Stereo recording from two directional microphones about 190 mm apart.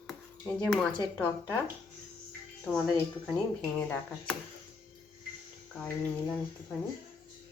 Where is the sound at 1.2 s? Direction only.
15° left (ahead or behind).